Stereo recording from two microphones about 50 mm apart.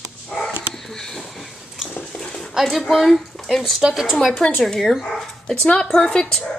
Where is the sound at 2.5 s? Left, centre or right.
Centre.